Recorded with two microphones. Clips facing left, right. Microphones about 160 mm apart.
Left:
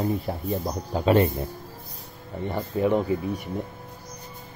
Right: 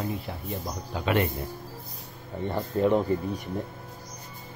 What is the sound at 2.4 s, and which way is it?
Speech, 5° left (ahead or behind).